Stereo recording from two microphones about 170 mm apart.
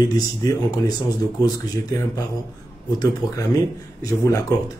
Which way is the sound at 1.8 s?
20° left (ahead or behind).